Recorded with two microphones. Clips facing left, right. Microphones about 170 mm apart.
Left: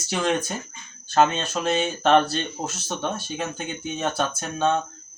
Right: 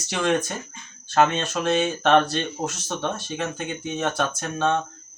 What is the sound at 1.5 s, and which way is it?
Speech, 10° left (ahead or behind).